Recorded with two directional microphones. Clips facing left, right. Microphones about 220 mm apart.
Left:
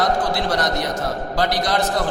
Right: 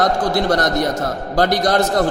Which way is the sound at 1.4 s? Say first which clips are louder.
Right 6 dB; 45° right (ahead or behind).